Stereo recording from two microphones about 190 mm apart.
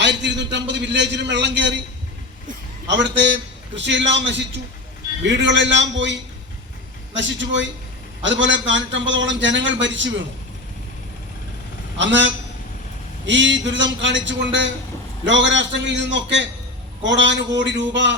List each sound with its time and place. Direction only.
0.0 s a man's voice: 70° right (ahead or behind)
2.9 s a man's voice: 70° right (ahead or behind)
11.9 s a man's voice: 75° right (ahead or behind)